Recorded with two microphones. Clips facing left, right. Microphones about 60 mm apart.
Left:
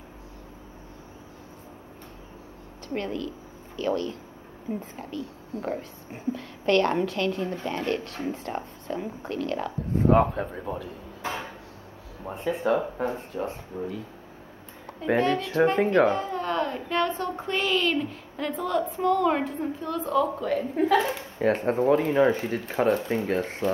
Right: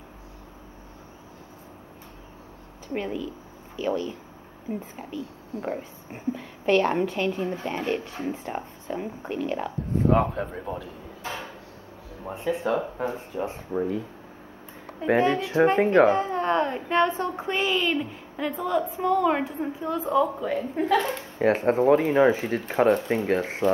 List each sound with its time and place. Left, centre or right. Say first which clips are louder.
2.9 s speech: right 1 dB; centre
10.0 s speech: left 2 dB; centre
12.3 s speech: left 1 dB; centre
13.7 s speech: right 10 dB; right
15.0 s speech: right 2 dB; centre
17.4 s speech: left 1 dB; centre
21.4 s speech: right 3 dB; centre